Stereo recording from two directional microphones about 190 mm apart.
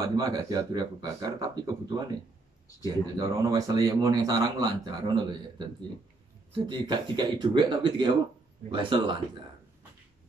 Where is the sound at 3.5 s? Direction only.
20° right (ahead or behind).